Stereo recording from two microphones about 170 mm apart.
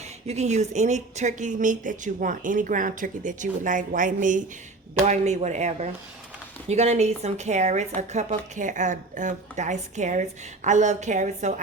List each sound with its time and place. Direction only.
0.3 s speech: 40° right (ahead or behind)